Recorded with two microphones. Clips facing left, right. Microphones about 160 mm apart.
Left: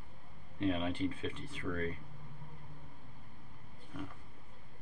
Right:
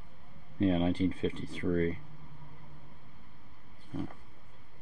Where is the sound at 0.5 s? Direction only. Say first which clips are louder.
Right 6 dB; 35° right (ahead or behind).